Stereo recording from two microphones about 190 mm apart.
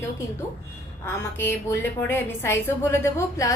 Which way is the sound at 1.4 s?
10° left (ahead or behind).